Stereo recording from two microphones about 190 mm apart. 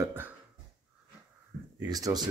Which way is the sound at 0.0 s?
10° right (ahead or behind).